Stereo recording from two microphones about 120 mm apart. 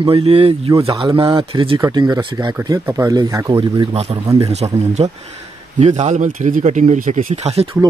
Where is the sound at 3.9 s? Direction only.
60° right (ahead or behind).